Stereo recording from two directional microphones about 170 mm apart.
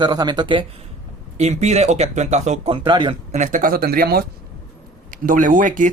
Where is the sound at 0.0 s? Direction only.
25° right (ahead or behind).